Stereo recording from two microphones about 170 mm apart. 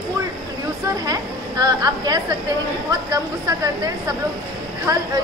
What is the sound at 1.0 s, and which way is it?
A woman's voice, 20° right (ahead or behind).